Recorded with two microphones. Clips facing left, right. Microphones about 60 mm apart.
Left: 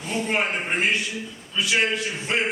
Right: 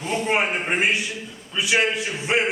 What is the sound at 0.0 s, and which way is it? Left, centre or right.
A man's voice, centre.